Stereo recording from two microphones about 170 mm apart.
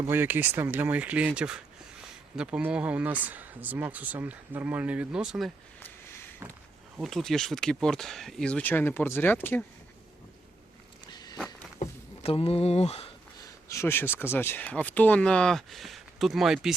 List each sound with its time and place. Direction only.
0.0 s speech: 15° right (ahead or behind)
5.8 s a sound: 15° left (ahead or behind)
7.0 s speech: centre (ahead or behind)
11.1 s walk: 25° left (ahead or behind)
11.8 s speech: 35° left (ahead or behind)
13.4 s speech: 15° left (ahead or behind); by 16.7 s centre (ahead or behind)